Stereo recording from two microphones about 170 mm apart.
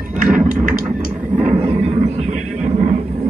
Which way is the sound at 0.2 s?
45° right (ahead or behind).